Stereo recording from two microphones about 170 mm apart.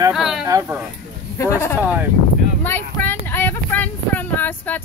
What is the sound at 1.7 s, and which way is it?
Speech, 10° right (ahead or behind).